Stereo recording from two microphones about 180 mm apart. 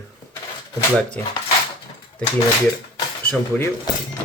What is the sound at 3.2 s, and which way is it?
Speech, 10° left (ahead or behind).